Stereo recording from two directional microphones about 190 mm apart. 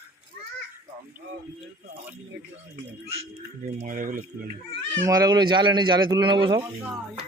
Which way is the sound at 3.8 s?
45° right (ahead or behind).